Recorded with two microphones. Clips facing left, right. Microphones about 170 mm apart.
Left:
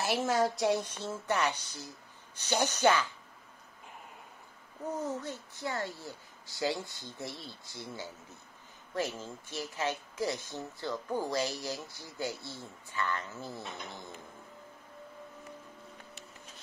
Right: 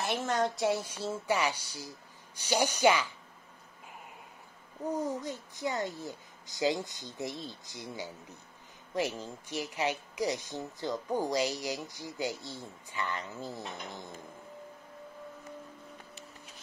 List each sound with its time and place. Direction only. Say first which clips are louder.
0.0 s speech: left 2 dB; 5° left (ahead or behind); by 3.1 s 10° right (ahead or behind)
4.9 s speech: right 2 dB; 10° right (ahead or behind)